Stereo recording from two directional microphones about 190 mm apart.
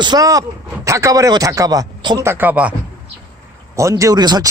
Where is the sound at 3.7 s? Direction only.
15° right (ahead or behind).